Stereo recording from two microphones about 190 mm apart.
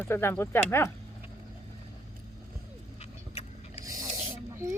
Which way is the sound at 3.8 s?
20° right (ahead or behind).